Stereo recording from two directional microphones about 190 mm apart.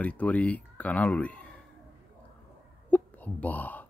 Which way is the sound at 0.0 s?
5° left (ahead or behind).